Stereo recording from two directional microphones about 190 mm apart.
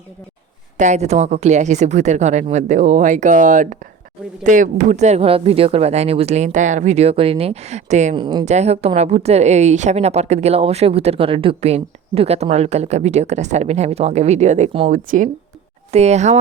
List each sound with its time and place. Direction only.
0.8 s a woman's voice: 35° right (ahead or behind)
8.1 s speech: 25° right (ahead or behind)
8.4 s a woman's voice: 35° right (ahead or behind)
14.8 s a woman's voice: 45° right (ahead or behind)